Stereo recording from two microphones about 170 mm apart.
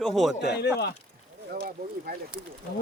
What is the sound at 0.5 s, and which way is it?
Speech, 75° left (ahead or behind).